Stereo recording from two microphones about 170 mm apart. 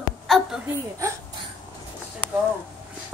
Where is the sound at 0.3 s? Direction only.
Centre (ahead or behind).